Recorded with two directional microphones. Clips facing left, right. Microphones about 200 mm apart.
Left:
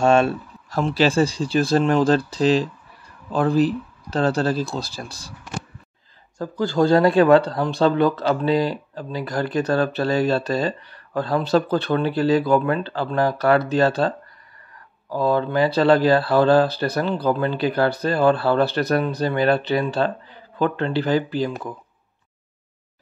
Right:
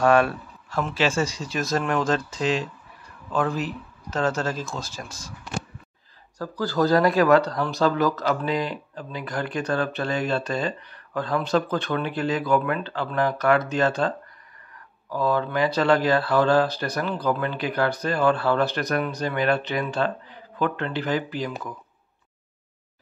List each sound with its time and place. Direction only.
0.0 s speech: 25° left (ahead or behind)
0.7 s speech: 35° left (ahead or behind)
6.3 s speech: 25° left (ahead or behind)